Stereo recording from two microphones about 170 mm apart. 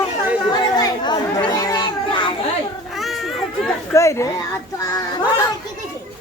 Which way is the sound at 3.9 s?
15° left (ahead or behind).